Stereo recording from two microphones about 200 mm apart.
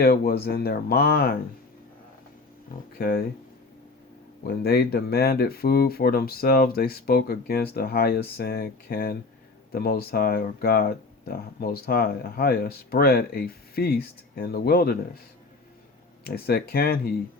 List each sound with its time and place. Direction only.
0.0 s speech: 50° left (ahead or behind)
3.0 s speech: 45° left (ahead or behind)
4.4 s speech: 50° left (ahead or behind)
16.2 s speech: 50° left (ahead or behind)